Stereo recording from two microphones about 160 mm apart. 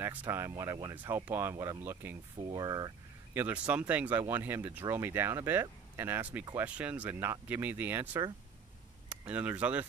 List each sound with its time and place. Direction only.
0.0 s speech: 15° right (ahead or behind)
3.3 s speech: 10° right (ahead or behind)